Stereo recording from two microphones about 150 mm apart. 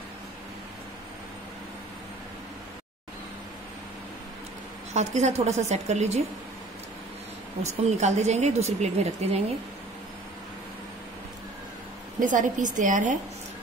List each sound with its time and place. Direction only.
4.9 s speech: 50° right (ahead or behind)
7.6 s speech: 50° right (ahead or behind)
12.2 s a woman's voice: 60° right (ahead or behind)